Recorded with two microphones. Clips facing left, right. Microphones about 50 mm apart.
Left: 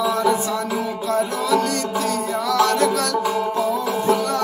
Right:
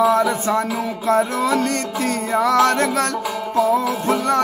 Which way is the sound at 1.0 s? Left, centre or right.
Right.